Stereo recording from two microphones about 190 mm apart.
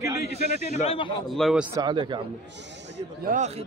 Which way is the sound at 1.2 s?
Centre (ahead or behind).